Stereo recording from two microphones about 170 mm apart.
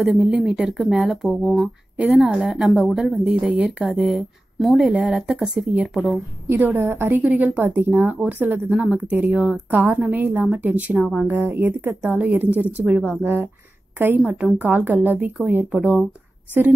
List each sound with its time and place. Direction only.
0.0 s speech: centre (ahead or behind)